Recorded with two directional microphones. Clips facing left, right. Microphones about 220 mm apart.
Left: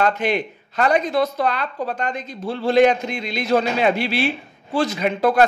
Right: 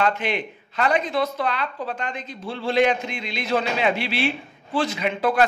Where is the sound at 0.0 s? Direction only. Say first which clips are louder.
Left 3 dB; 45° left (ahead or behind).